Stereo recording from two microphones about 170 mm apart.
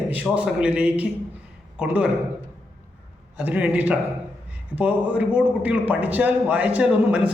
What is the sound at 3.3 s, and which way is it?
A man's voice, 10° right (ahead or behind).